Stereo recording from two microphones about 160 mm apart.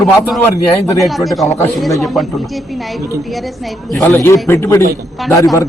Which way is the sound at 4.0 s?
15° left (ahead or behind).